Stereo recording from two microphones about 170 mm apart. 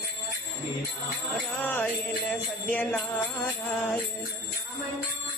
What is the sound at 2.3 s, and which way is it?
Jingle bell, 5° left (ahead or behind).